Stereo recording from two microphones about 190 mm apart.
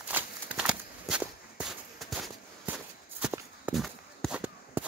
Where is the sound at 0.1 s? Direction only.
5° right (ahead or behind).